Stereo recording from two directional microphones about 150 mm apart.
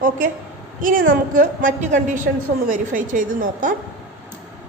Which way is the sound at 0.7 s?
65° right (ahead or behind).